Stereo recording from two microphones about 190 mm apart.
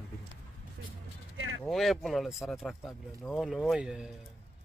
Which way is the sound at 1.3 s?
90° right.